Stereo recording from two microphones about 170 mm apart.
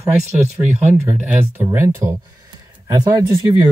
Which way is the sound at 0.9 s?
10° right (ahead or behind).